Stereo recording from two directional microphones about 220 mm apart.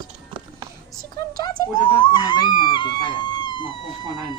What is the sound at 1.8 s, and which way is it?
Speech, 20° left (ahead or behind).